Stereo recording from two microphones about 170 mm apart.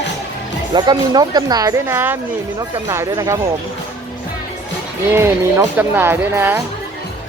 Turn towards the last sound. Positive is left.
turn(degrees=-10)  # may be behind; listen again after turning